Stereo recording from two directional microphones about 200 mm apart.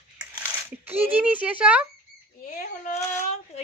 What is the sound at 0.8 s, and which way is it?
Speech, 10° right (ahead or behind).